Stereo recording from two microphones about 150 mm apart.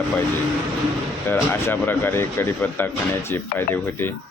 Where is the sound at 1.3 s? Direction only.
15° left (ahead or behind).